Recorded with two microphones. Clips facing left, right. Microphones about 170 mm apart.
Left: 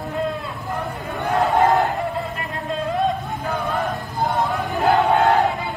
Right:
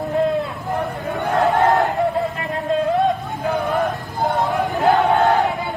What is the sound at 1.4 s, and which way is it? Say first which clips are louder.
Battle cry: right 1 dB; centre (ahead or behind).